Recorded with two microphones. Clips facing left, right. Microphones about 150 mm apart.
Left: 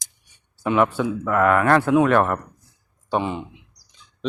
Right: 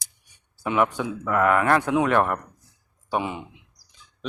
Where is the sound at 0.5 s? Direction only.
10° right (ahead or behind).